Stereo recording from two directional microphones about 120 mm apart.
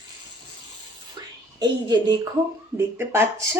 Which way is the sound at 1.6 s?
35° right (ahead or behind).